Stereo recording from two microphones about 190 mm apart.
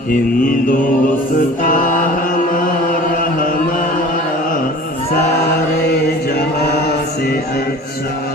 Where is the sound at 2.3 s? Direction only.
45° left (ahead or behind).